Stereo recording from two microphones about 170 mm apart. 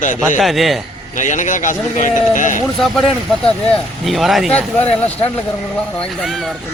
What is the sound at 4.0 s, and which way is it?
Speech, centre (ahead or behind).